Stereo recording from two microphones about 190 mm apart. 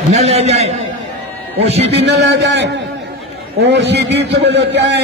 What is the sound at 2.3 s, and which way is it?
A man's voice, 65° right (ahead or behind).